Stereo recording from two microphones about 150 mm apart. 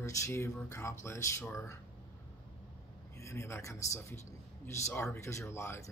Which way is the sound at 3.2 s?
20° left (ahead or behind).